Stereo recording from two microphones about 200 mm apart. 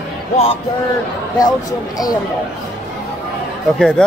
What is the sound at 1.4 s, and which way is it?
Speech, 20° left (ahead or behind).